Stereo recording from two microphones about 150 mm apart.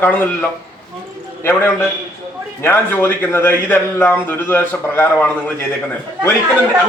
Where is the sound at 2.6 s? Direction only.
15° left (ahead or behind).